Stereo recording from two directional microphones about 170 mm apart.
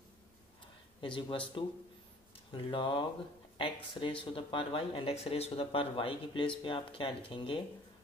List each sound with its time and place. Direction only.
1.0 s speech: 30° left (ahead or behind)